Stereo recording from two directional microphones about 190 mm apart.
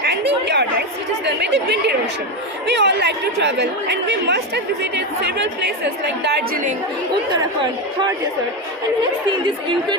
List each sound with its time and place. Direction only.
0.0 s chatter: 60° right (ahead or behind)
1.2 s speech: 65° right (ahead or behind)
6.2 s a woman's voice: 45° right (ahead or behind)